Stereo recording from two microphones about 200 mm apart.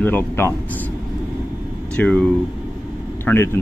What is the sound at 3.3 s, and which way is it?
Speech, 5° left (ahead or behind).